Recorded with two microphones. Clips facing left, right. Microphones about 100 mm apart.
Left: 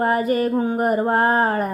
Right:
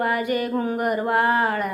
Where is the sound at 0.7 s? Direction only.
35° left (ahead or behind).